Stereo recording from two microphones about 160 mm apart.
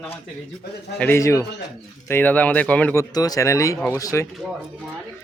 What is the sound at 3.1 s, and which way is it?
Speech, 25° left (ahead or behind).